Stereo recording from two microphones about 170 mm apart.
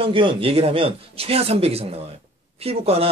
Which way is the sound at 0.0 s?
30° right (ahead or behind).